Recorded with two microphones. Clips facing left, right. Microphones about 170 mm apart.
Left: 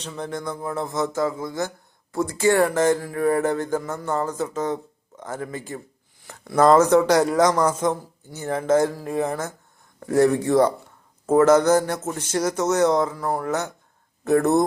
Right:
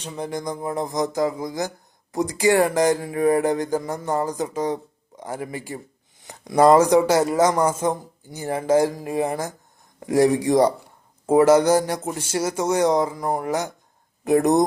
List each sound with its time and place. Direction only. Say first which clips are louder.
0.0 s speech: right 1 dB; 10° right (ahead or behind)